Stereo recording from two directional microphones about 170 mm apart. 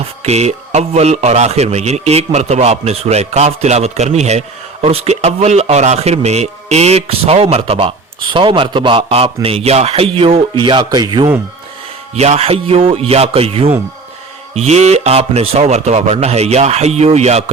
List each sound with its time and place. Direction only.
0.0 s speech: 40° right (ahead or behind)
12.1 s speech: 40° right (ahead or behind)